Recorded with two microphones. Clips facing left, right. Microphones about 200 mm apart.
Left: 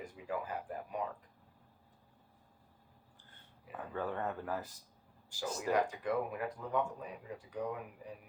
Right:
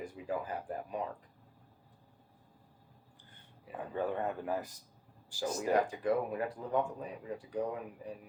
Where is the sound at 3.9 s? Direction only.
15° right (ahead or behind).